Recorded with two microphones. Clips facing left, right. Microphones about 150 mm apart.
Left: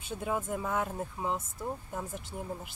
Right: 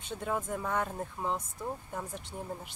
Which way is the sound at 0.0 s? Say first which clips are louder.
Left 1 dB; 5° left (ahead or behind).